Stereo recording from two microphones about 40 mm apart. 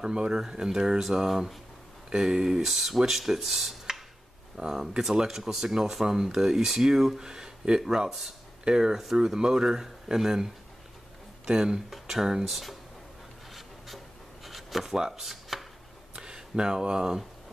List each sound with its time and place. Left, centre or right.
0.0 s speech: centre
13.6 s writing: centre
15.0 s speech: centre
15.5 s chopping: centre
16.2 s speech: right